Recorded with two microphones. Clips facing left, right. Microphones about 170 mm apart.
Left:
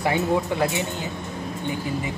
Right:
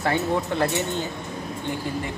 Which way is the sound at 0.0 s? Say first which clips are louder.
Left 1 dB; 15° left (ahead or behind).